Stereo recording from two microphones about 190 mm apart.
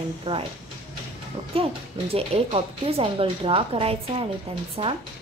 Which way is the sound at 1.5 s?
30° right (ahead or behind).